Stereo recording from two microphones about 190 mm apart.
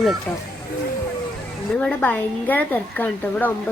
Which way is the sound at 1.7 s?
10° left (ahead or behind).